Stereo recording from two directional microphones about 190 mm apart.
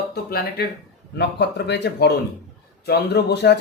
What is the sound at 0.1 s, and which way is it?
Speech, 55° left (ahead or behind).